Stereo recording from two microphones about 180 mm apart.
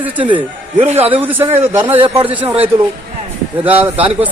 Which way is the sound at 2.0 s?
30° right (ahead or behind).